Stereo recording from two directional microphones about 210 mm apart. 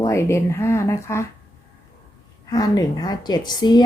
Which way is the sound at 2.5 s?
15° left (ahead or behind).